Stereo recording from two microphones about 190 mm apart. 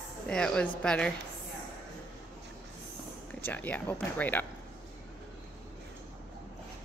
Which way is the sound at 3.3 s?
10° left (ahead or behind).